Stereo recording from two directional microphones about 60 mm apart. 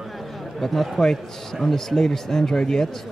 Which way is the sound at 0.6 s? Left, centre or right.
Centre.